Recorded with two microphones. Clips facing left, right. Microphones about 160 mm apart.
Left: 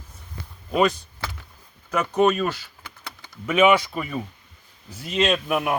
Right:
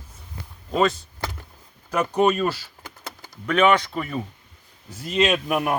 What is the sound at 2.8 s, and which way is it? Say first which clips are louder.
Typing: right 2 dB; 45° right (ahead or behind).